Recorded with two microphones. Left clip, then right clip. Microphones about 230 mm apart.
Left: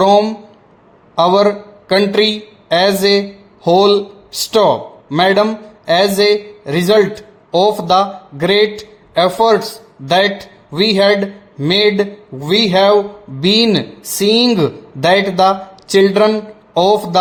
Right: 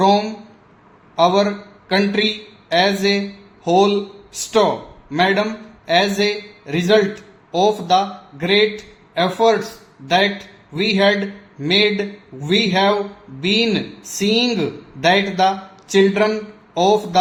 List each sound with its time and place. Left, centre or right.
0.0 s a man's voice: left
10.8 s speech: left